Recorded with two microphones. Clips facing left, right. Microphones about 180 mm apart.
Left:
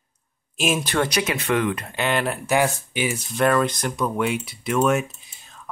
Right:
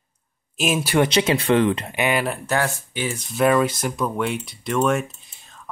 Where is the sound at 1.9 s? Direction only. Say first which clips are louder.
Right 2 dB; 10° right (ahead or behind).